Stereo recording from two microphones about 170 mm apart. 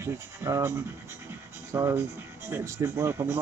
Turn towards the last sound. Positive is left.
turn(degrees=-15)  # may be behind; listen again after turning